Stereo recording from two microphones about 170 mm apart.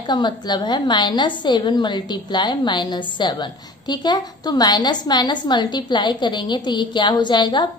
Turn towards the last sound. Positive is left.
turn(degrees=25)  # may be behind; listen again after turning